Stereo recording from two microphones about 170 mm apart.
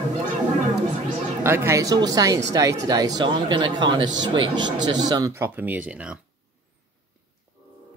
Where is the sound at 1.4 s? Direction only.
15° right (ahead or behind).